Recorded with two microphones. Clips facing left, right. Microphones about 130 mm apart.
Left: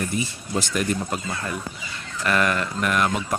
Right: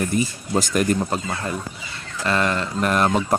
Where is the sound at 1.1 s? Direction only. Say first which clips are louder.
Right 3 dB; 30° right (ahead or behind).